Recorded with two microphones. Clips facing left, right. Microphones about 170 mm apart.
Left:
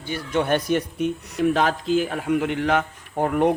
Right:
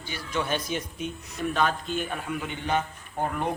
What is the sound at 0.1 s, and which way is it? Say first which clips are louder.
Speech: left 8 dB; 60° left (ahead or behind).